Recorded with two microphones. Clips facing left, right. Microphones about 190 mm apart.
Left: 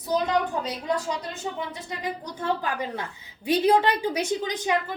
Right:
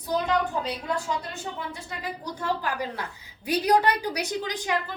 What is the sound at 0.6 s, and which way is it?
A woman's voice, 20° left (ahead or behind).